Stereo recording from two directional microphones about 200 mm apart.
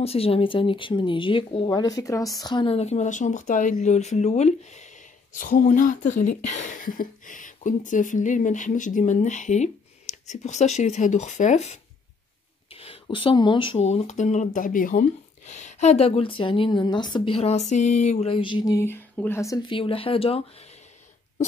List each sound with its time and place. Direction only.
0.0 s speech: 30° left (ahead or behind)